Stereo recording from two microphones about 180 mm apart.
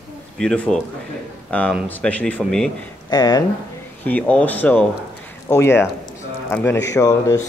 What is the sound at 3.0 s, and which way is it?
Speech, 20° left (ahead or behind).